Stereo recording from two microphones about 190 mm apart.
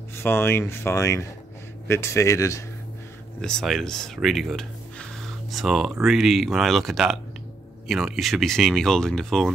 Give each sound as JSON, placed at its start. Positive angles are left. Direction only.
{"t": 0.1, "sound": "speech", "side_deg": 10}
{"t": 3.3, "sound": "speech", "side_deg": 5}